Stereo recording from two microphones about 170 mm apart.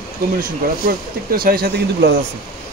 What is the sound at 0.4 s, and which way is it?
Speech, 60° right (ahead or behind).